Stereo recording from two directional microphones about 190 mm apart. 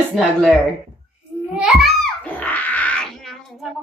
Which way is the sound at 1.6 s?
Centre (ahead or behind).